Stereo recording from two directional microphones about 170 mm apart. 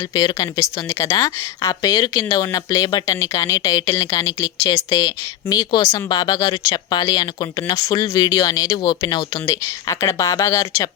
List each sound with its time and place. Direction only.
0.1 s a woman's voice: 25° left (ahead or behind)